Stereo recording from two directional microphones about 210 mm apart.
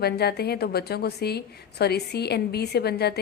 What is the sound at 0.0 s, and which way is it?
A woman's voice, 50° left (ahead or behind).